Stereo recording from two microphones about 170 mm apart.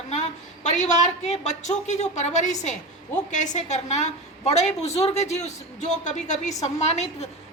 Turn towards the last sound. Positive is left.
turn(degrees=40)  # may be behind; listen again after turning